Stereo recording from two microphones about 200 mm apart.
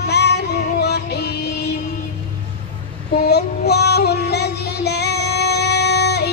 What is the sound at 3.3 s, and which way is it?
Music, 55° left (ahead or behind).